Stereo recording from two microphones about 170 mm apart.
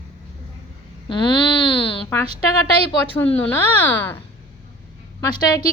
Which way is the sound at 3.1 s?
10° left (ahead or behind).